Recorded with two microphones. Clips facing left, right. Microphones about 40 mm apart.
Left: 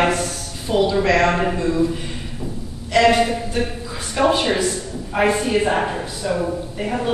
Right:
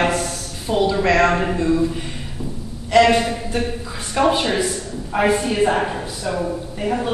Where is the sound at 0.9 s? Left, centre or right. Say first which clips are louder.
Right 2 dB; centre.